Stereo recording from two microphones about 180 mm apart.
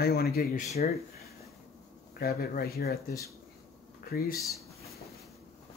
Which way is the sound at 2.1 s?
55° left (ahead or behind).